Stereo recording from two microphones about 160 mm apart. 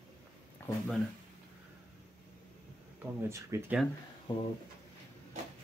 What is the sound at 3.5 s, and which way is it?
Speech, 20° right (ahead or behind).